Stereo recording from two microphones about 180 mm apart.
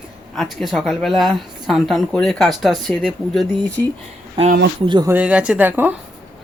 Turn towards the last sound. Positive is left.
turn(degrees=-10)  # may be behind; listen again after turning